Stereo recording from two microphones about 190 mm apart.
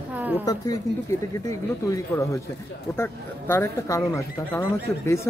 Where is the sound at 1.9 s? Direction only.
15° left (ahead or behind).